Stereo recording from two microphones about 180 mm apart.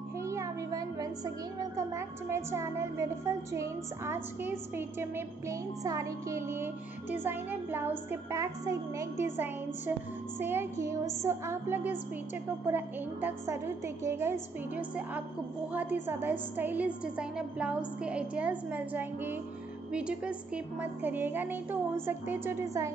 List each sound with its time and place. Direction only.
0.2 s speech: 15° right (ahead or behind)